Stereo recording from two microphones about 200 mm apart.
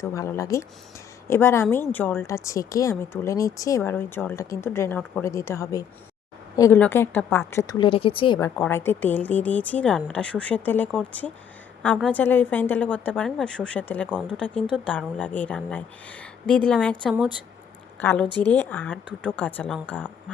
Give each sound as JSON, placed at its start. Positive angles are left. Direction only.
{"t": 0.0, "sound": "speech", "side_deg": 15}
{"t": 7.7, "sound": "a woman's voice", "side_deg": 25}